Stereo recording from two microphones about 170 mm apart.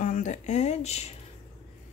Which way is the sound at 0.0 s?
45° left (ahead or behind).